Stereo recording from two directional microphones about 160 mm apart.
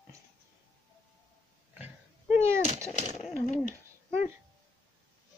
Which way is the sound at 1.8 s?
10° right (ahead or behind).